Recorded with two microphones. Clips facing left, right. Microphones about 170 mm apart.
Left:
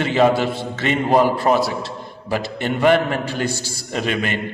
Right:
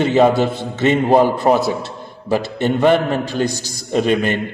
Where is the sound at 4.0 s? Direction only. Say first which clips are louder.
Right 6 dB; 35° right (ahead or behind).